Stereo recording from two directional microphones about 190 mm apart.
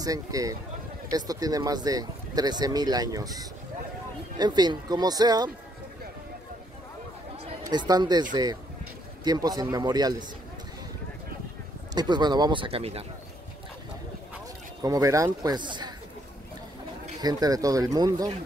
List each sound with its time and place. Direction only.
0.0 s speech: 20° right (ahead or behind)
7.6 s speech: 20° right (ahead or behind)
11.9 s speech: 20° right (ahead or behind)
14.8 s speech: 20° right (ahead or behind)
17.2 s speech: 20° right (ahead or behind)